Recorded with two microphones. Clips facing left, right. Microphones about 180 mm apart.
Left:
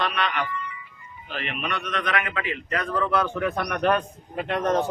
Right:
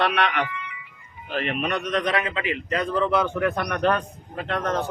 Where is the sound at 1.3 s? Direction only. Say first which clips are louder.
Right 5 dB; 40° right (ahead or behind); by 3.2 s 20° right (ahead or behind).